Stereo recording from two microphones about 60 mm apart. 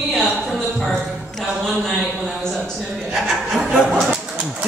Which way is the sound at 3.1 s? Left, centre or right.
Centre.